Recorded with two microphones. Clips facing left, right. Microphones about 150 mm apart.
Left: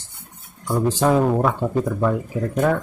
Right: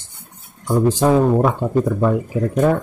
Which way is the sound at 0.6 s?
15° right (ahead or behind).